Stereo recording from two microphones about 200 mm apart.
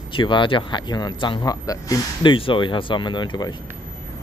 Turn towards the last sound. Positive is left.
turn(degrees=20)  # may be behind; listen again after turning